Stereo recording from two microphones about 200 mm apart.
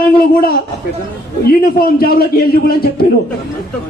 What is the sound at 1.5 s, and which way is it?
A man's voice, 50° left (ahead or behind).